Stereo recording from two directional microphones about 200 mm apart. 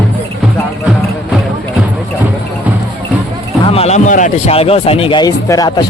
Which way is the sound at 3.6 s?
30° left (ahead or behind).